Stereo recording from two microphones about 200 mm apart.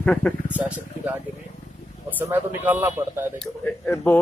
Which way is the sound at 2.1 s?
10° right (ahead or behind).